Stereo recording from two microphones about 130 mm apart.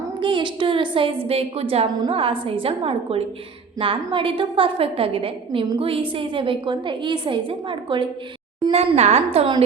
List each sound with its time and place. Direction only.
0.2 s a woman's voice: 40° right (ahead or behind)
8.7 s a woman's voice: 55° right (ahead or behind)